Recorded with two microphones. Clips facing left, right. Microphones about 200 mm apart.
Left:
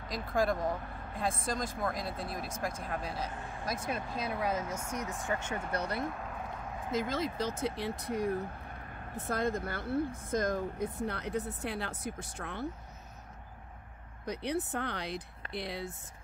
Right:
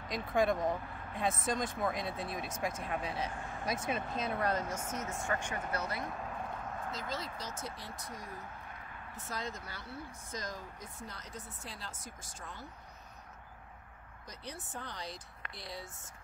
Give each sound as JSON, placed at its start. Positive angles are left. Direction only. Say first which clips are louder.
{"t": 0.1, "sound": "speech", "louder": "even", "side_deg": 0}
{"t": 5.2, "sound": "speech", "louder": "left 1 dB", "side_deg": 20}
{"t": 5.9, "sound": "speech", "louder": "left 4 dB", "side_deg": 0}
{"t": 6.9, "sound": "speech", "louder": "left 11 dB", "side_deg": 50}
{"t": 14.2, "sound": "speech", "louder": "left 13 dB", "side_deg": 65}